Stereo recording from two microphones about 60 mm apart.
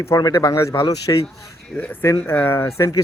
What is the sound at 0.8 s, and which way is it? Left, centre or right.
Speech, left.